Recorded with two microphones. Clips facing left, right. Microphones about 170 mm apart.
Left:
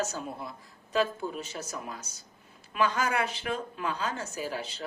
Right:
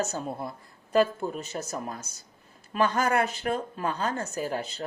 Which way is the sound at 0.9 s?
50° right (ahead or behind).